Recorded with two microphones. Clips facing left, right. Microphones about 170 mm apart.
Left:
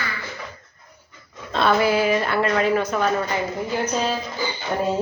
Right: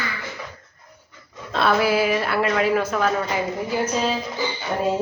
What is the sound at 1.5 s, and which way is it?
A woman's voice, 5° right (ahead or behind).